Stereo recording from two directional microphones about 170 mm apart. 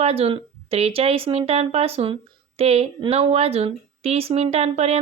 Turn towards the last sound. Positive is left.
turn(degrees=-40)  # may be behind; listen again after turning